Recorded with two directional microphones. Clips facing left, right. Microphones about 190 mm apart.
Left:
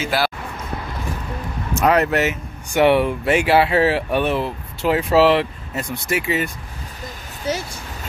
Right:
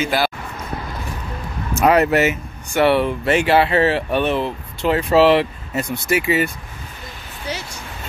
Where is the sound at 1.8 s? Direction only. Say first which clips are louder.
Right 2 dB; 5° right (ahead or behind).